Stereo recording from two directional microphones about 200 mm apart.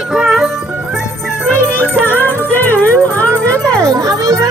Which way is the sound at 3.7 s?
15° right (ahead or behind).